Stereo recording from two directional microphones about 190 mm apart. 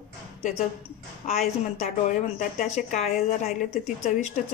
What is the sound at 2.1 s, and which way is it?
Speech, 45° left (ahead or behind).